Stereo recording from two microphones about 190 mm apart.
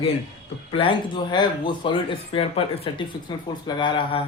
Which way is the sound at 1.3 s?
25° left (ahead or behind).